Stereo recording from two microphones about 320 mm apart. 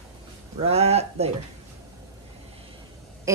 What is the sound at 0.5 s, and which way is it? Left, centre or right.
Speech, centre.